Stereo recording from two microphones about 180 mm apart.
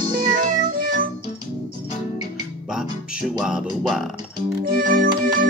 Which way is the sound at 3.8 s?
Centre (ahead or behind).